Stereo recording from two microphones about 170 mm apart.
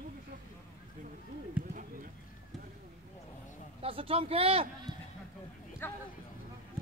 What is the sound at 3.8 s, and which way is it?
Speech, 35° right (ahead or behind).